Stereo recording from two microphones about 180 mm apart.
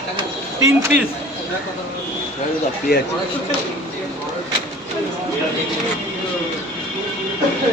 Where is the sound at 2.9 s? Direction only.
65° left (ahead or behind).